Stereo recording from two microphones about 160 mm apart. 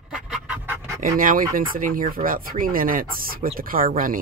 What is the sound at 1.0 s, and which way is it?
Speech, 55° right (ahead or behind).